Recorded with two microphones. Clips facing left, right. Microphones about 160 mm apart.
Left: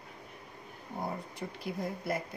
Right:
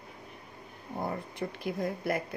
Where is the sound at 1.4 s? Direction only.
65° right (ahead or behind).